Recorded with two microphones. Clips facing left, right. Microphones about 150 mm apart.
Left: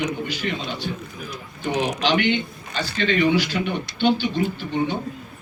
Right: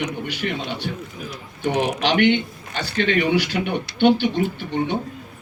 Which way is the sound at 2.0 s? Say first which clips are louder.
Right 4 dB; 60° right (ahead or behind).